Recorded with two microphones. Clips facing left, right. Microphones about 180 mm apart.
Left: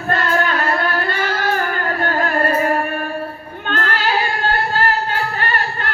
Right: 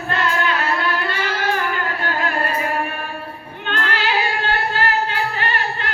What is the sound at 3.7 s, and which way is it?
Female singing, 45° left (ahead or behind).